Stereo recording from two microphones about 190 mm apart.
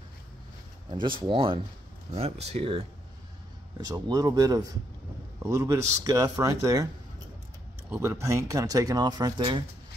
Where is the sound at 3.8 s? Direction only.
20° right (ahead or behind).